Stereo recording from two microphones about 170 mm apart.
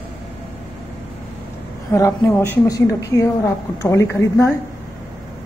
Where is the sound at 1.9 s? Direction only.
20° left (ahead or behind).